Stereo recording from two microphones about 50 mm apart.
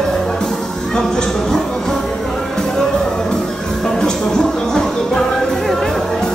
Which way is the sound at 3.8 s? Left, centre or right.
Centre.